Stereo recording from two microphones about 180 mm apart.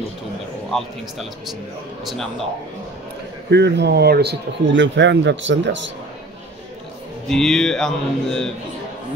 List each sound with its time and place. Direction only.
0.7 s speech: centre (ahead or behind)
3.4 s speech: 70° right (ahead or behind); by 5.8 s 90° right
7.2 s speech: centre (ahead or behind)